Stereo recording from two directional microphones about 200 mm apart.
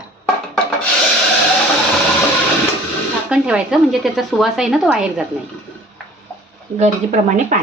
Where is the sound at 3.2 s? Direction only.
5° right (ahead or behind).